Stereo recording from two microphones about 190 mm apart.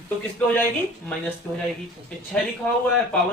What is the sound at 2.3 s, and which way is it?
Speech, 5° left (ahead or behind).